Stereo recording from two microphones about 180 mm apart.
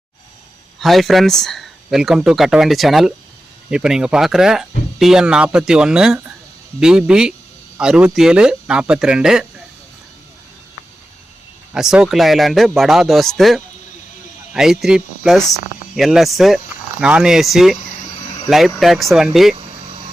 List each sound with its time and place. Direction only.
0.8 s speech: centre (ahead or behind)
11.7 s speech: 5° right (ahead or behind)